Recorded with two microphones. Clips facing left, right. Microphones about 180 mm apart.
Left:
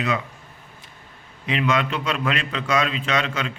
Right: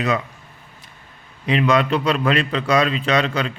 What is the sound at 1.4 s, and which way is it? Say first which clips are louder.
Speech: right 5 dB; 35° right (ahead or behind).